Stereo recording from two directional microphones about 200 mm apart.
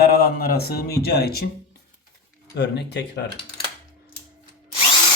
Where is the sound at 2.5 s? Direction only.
55° left (ahead or behind).